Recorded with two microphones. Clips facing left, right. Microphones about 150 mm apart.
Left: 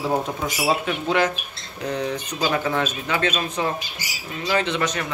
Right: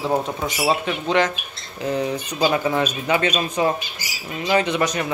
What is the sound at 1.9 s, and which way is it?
Speech, 10° right (ahead or behind).